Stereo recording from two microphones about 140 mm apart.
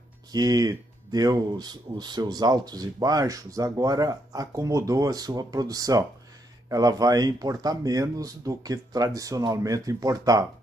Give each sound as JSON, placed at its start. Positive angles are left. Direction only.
{"t": 0.3, "sound": "speech", "side_deg": -30}